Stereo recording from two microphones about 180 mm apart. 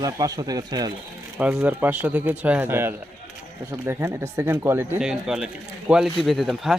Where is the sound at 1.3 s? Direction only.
5° right (ahead or behind).